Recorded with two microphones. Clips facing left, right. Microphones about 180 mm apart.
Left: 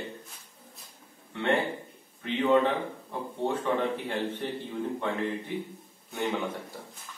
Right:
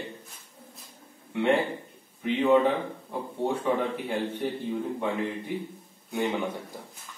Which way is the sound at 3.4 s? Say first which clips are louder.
Right 1 dB; 10° right (ahead or behind).